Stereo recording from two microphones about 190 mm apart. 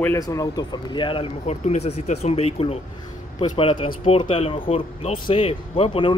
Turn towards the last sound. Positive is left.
turn(degrees=30)  # may be behind; listen again after turning